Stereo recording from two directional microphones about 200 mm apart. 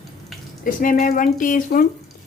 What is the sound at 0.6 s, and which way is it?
Speech, 45° left (ahead or behind).